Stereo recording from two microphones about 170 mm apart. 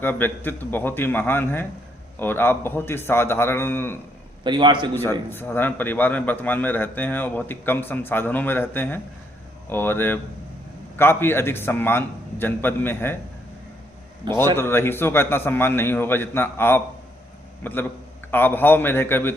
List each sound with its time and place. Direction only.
0.0 s a man's voice: 10° left (ahead or behind)
4.4 s a man's voice: 25° right (ahead or behind)
5.3 s a man's voice: 10° left (ahead or behind)
14.5 s a man's voice: 15° left (ahead or behind)